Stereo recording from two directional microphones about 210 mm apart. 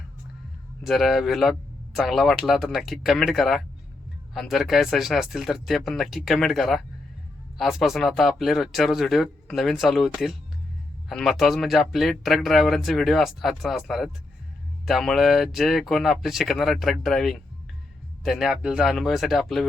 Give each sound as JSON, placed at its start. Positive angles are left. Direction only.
{"t": 0.9, "sound": "speech", "side_deg": 0}